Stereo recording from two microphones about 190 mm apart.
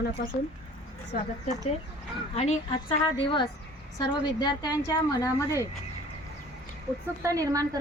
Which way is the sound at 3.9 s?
20° left (ahead or behind).